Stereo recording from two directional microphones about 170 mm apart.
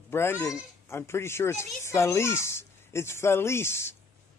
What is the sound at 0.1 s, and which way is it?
Speech, 15° left (ahead or behind).